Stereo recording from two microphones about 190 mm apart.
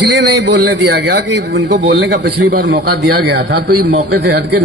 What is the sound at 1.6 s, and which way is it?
Speech, 75° right (ahead or behind).